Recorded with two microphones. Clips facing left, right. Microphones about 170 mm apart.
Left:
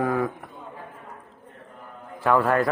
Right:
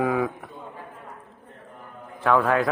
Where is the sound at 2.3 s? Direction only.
Centre (ahead or behind).